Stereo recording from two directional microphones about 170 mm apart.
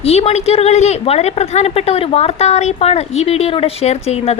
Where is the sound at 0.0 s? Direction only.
40° left (ahead or behind).